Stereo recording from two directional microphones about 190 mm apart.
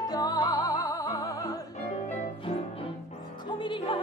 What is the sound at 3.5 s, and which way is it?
Music, 25° left (ahead or behind).